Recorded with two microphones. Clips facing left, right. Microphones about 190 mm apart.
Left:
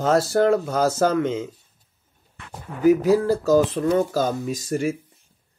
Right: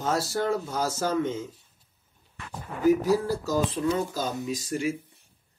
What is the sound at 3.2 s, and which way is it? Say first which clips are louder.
Speech: left 9 dB; 90° left.